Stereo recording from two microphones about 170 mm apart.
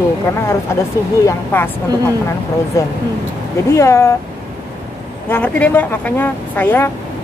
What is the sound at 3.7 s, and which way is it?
Speech, 15° left (ahead or behind).